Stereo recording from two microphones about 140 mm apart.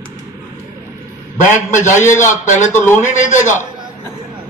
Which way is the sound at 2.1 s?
60° left (ahead or behind).